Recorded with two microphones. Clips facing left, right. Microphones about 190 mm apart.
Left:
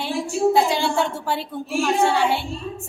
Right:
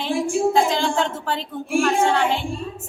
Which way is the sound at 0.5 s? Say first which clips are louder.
Even; 10° left (ahead or behind).